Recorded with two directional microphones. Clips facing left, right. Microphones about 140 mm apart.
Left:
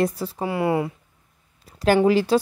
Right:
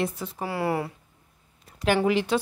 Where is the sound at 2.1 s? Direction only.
35° left (ahead or behind).